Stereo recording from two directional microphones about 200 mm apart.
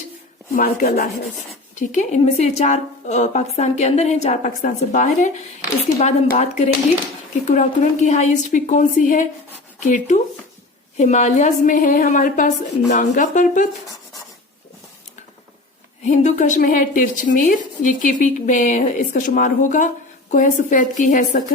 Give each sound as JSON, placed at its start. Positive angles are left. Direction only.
{"t": 0.5, "sound": "a woman's voice", "side_deg": 45}
{"t": 16.0, "sound": "a woman's voice", "side_deg": 35}